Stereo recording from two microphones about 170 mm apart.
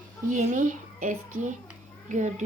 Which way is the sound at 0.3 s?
50° right (ahead or behind).